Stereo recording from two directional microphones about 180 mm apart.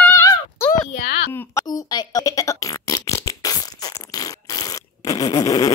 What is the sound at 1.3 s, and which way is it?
Fart, 15° left (ahead or behind).